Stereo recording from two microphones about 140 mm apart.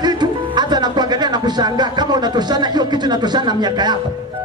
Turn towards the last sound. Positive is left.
turn(degrees=-30)  # may be behind; listen again after turning